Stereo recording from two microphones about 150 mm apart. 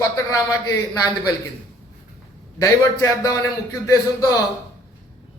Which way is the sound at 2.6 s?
20° left (ahead or behind).